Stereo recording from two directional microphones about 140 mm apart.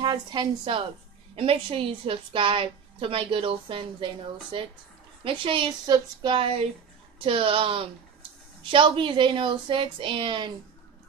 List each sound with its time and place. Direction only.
0.0 s a woman's voice: 30° right (ahead or behind)